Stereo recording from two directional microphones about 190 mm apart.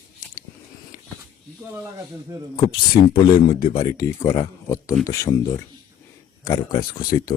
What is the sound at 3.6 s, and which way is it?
Speech, 25° left (ahead or behind).